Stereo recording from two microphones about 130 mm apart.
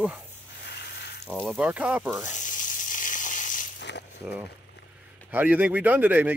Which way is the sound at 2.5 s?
85° left.